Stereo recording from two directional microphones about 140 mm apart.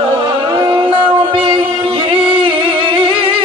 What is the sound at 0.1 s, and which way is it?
Music, 35° right (ahead or behind).